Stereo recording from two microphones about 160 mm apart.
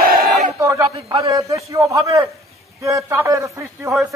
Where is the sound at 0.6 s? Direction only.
20° right (ahead or behind).